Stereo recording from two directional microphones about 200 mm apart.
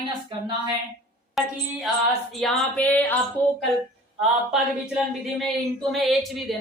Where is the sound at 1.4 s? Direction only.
Centre (ahead or behind).